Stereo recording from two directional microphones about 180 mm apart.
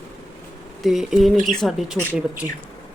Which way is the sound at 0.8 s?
Centre (ahead or behind).